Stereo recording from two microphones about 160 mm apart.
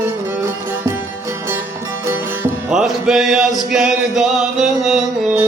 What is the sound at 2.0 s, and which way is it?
Music, 15° right (ahead or behind).